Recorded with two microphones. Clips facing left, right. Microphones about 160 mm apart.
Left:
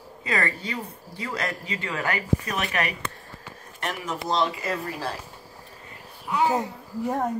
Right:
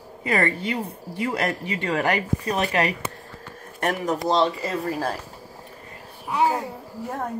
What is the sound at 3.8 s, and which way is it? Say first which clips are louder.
Speech: right 7 dB; 45° right (ahead or behind).